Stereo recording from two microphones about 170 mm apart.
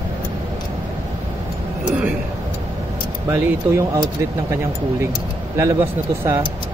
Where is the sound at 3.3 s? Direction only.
15° right (ahead or behind).